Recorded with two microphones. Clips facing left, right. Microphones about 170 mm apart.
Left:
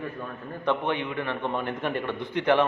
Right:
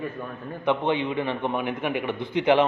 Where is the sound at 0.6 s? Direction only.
20° right (ahead or behind).